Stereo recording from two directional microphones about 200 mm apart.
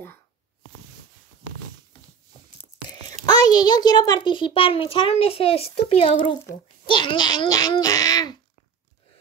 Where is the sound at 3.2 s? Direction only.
20° left (ahead or behind).